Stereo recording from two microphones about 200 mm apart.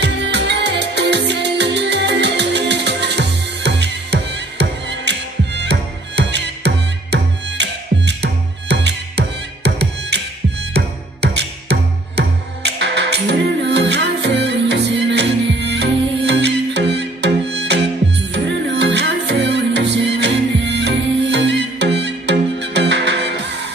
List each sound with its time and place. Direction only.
0.0 s music: 60° right (ahead or behind)